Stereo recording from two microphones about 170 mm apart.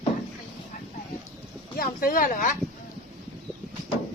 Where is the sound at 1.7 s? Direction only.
55° left (ahead or behind).